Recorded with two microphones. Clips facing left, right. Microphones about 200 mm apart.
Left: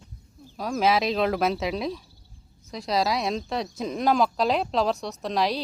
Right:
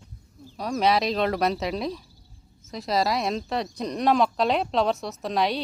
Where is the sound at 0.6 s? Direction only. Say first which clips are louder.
Even; centre (ahead or behind).